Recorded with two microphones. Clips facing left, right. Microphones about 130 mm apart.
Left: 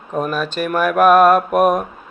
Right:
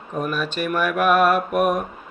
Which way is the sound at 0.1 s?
35° left (ahead or behind).